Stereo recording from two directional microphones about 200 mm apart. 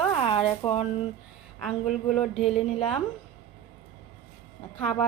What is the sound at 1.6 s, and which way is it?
Speech, centre (ahead or behind).